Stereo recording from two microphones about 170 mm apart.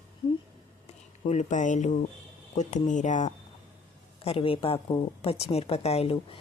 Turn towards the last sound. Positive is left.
turn(degrees=35)  # may be behind; listen again after turning